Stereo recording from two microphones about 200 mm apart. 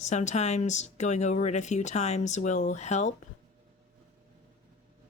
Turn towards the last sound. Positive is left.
turn(degrees=35)  # may be behind; listen again after turning